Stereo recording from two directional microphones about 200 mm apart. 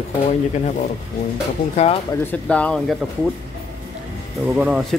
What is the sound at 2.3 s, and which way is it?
Speech, 5° left (ahead or behind).